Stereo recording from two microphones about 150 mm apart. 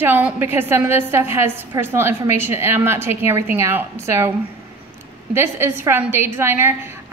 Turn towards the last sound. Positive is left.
turn(degrees=-15)  # may be behind; listen again after turning